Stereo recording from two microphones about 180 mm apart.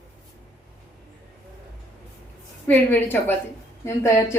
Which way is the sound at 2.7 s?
10° left (ahead or behind).